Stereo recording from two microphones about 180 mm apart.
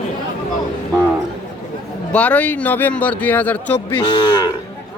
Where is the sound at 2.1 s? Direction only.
10° left (ahead or behind).